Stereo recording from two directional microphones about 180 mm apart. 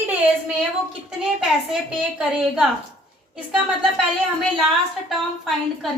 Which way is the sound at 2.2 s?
5° right (ahead or behind).